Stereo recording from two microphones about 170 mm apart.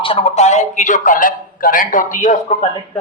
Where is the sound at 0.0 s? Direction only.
35° left (ahead or behind).